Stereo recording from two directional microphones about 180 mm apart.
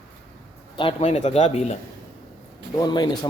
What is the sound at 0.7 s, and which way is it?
A man's voice, 30° left (ahead or behind).